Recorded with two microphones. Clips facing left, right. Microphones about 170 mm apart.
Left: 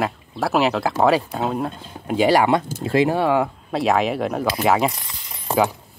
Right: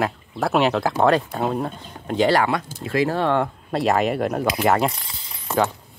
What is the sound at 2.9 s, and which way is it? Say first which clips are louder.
Speech: left 3 dB; 25° left (ahead or behind).